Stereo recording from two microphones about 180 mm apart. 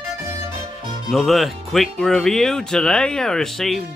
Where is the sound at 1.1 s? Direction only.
Centre (ahead or behind).